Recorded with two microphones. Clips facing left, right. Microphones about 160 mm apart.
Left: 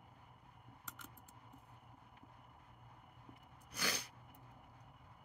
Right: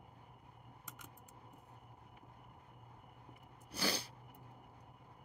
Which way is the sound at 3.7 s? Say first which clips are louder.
Right 5 dB; 30° right (ahead or behind).